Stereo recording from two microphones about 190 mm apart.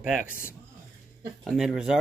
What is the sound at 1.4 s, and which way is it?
Speech, centre (ahead or behind).